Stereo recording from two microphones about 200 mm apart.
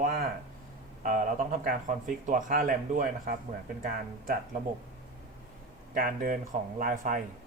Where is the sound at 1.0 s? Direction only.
45° right (ahead or behind).